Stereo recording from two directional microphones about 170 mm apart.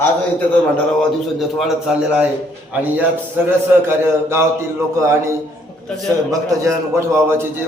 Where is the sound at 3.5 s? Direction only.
15° right (ahead or behind).